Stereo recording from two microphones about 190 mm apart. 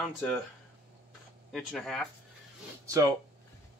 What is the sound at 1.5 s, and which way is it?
Speech, centre (ahead or behind).